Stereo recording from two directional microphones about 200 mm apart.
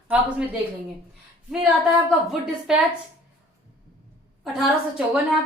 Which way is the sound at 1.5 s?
5° right (ahead or behind).